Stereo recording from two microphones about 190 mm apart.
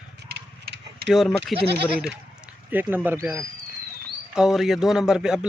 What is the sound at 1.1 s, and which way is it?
Speech, 5° left (ahead or behind).